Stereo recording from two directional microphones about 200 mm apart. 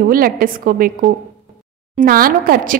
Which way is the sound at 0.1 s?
45° right (ahead or behind).